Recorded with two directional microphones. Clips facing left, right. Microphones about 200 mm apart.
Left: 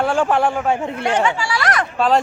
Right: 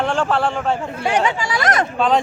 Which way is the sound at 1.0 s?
15° right (ahead or behind).